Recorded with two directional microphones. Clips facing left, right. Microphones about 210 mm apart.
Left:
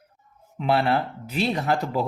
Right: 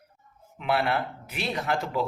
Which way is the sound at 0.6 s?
35° left (ahead or behind).